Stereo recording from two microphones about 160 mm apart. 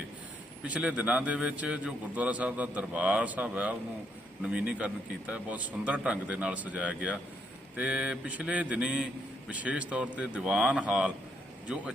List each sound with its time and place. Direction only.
0.6 s a man's voice: 10° right (ahead or behind)